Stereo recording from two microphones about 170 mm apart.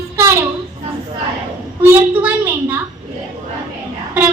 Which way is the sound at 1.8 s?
10° right (ahead or behind).